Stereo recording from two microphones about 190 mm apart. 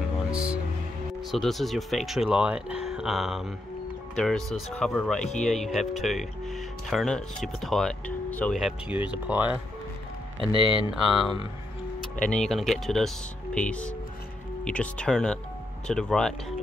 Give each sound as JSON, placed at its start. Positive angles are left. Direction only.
{"t": 0.3, "sound": "music", "side_deg": -5}
{"t": 1.3, "sound": "speech", "side_deg": 0}
{"t": 10.5, "sound": "speech", "side_deg": -25}
{"t": 12.2, "sound": "speech", "side_deg": 5}